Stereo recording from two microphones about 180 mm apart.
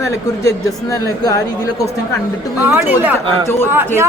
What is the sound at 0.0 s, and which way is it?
Speech, 20° left (ahead or behind).